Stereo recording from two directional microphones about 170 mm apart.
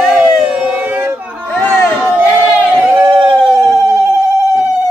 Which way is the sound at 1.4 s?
10° left (ahead or behind).